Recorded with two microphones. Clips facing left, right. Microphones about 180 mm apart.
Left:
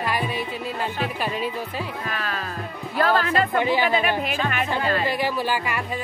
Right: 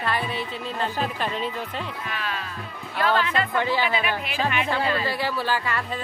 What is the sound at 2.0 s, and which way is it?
Speech, 45° left (ahead or behind).